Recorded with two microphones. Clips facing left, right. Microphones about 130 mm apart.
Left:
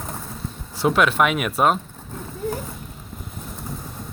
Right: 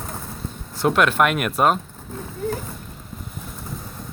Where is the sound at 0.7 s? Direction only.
Centre (ahead or behind).